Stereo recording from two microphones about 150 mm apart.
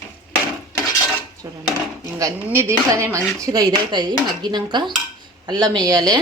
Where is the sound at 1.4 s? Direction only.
20° right (ahead or behind).